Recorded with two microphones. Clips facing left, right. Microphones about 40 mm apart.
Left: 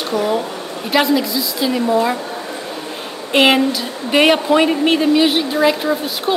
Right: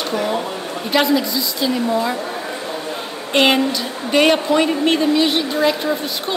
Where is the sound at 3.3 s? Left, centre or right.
Centre.